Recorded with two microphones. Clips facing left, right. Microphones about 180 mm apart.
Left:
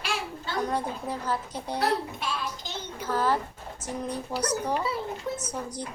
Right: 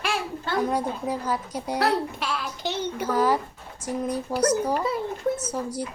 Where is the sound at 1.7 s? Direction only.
70° right (ahead or behind).